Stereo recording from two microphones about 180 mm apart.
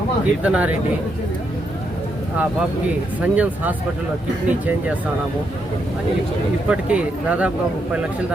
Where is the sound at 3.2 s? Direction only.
10° right (ahead or behind).